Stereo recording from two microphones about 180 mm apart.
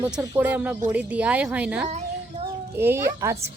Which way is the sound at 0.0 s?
10° right (ahead or behind).